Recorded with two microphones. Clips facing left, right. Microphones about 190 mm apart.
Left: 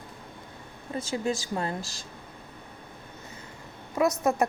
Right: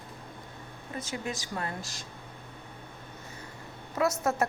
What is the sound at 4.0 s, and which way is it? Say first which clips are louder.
Speech: left 3 dB; 15° left (ahead or behind).